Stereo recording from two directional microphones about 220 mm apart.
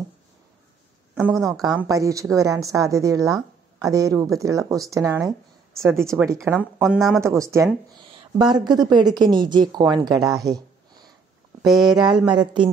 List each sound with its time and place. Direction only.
1.1 s a woman's voice: centre (ahead or behind)
1.9 s a woman's voice: 15° right (ahead or behind)
11.6 s speech: centre (ahead or behind)
12.3 s speech: 20° right (ahead or behind)